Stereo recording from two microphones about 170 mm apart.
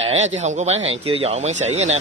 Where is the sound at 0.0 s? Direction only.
35° right (ahead or behind).